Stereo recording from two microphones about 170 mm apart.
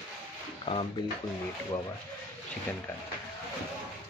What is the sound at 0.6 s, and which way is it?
Speech, 30° left (ahead or behind).